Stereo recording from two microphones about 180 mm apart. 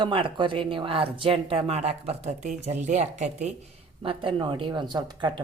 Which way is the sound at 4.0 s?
25° right (ahead or behind).